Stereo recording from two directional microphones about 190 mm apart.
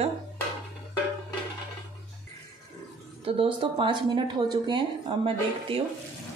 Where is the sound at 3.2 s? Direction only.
30° right (ahead or behind).